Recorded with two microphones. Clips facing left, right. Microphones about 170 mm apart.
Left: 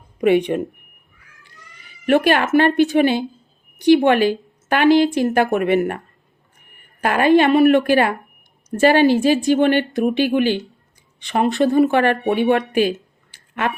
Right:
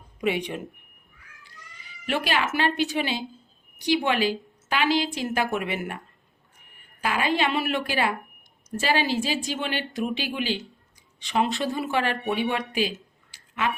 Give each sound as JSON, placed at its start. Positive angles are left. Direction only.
{"t": 0.2, "sound": "a woman's voice", "side_deg": 55}
{"t": 7.0, "sound": "a woman's voice", "side_deg": 55}